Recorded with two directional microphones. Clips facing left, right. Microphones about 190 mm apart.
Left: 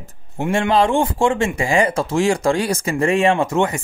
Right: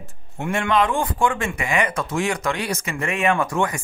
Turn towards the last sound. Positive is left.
turn(degrees=25)  # may be behind; listen again after turning